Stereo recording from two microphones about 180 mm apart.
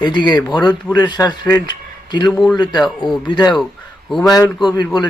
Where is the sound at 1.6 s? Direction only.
25° left (ahead or behind).